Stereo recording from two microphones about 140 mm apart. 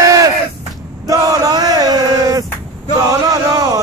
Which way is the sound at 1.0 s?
25° right (ahead or behind).